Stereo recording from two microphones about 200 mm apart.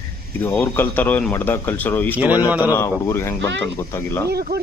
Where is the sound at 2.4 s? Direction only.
10° right (ahead or behind).